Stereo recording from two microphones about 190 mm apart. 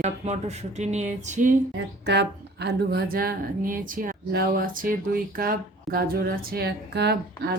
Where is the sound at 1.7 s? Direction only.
65° right (ahead or behind).